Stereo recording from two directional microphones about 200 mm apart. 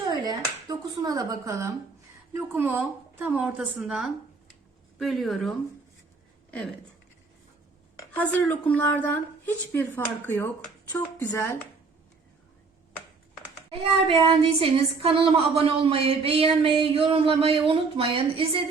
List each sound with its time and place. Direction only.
0.0 s a sound: 20° right (ahead or behind)
2.3 s a woman's voice: 10° right (ahead or behind)
7.9 s speech: 10° left (ahead or behind)
13.7 s speech: 25° right (ahead or behind)